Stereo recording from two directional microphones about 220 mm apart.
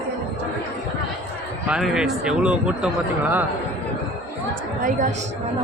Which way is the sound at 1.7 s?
5° right (ahead or behind).